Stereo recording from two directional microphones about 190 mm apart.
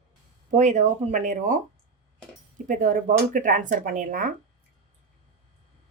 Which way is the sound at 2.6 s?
45° right (ahead or behind).